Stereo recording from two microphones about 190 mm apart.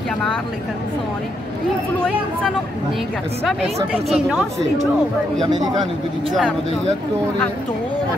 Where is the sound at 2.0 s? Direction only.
5° left (ahead or behind).